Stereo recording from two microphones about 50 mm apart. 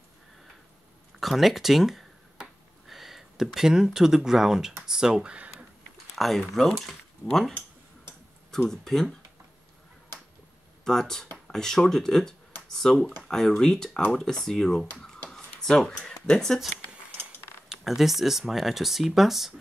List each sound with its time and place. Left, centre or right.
1.2 s speech: centre
2.4 s a sound: centre
2.9 s a sound: centre
3.5 s speech: centre
6.1 s speech: centre
8.5 s speech: centre
10.8 s speech: centre
15.2 s a sound: centre
16.3 s speech: centre
17.6 s speech: centre